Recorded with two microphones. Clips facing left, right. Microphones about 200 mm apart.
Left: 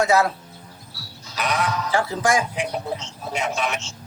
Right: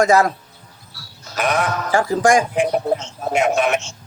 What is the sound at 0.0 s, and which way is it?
A man's voice, 45° right (ahead or behind).